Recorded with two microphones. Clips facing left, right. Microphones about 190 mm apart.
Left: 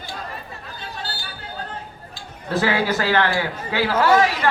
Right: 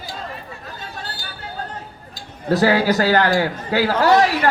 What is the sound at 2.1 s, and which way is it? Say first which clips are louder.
A man's voice: right 5 dB; 40° right (ahead or behind).